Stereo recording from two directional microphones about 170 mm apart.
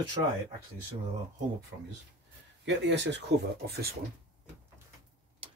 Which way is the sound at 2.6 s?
90° right.